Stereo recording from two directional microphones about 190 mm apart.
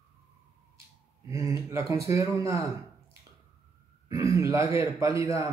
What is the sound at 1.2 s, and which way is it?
Speech, 15° right (ahead or behind).